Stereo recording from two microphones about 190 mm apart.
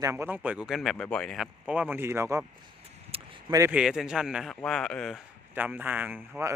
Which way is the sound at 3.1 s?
30° right (ahead or behind).